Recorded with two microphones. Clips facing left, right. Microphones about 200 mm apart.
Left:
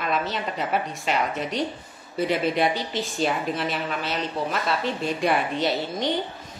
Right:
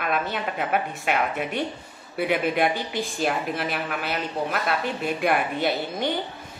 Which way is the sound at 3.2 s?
5° right (ahead or behind).